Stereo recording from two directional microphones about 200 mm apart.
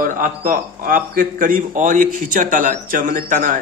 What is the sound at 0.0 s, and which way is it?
A man's voice, 40° right (ahead or behind).